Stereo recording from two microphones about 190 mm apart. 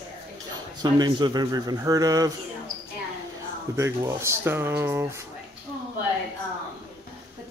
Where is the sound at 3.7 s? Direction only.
15° right (ahead or behind).